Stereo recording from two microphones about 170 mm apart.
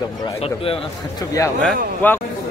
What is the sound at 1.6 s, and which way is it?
Speech, 10° left (ahead or behind).